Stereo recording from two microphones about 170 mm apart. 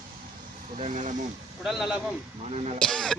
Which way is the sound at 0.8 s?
45° right (ahead or behind).